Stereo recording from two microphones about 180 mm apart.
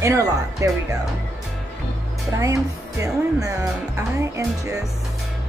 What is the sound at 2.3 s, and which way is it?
Speech, 15° right (ahead or behind).